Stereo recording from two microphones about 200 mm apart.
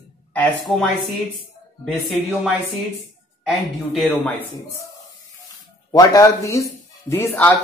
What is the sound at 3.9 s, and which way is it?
Speech, 5° left (ahead or behind).